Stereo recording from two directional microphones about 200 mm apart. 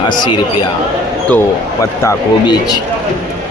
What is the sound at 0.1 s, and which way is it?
Speech, 25° left (ahead or behind).